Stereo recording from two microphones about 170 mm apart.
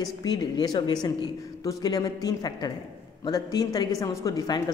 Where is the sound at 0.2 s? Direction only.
25° left (ahead or behind).